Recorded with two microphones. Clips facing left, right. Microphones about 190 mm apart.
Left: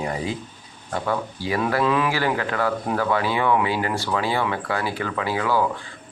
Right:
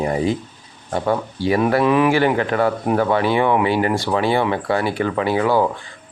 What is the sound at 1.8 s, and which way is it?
Speech, 15° right (ahead or behind).